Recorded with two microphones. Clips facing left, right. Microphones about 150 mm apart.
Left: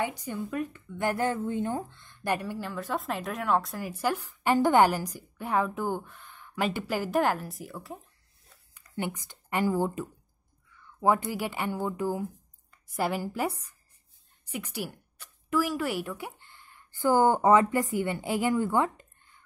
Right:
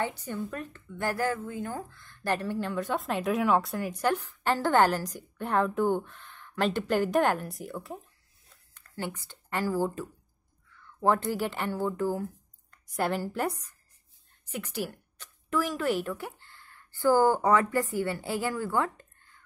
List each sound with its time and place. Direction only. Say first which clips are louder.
0.0 s speech: even; 15° left (ahead or behind)
2.5 s speech: right 3 dB; centre (ahead or behind)
8.7 s speech: left 2 dB; 15° left (ahead or behind)
14.5 s a woman's voice: right 1 dB; 10° left (ahead or behind)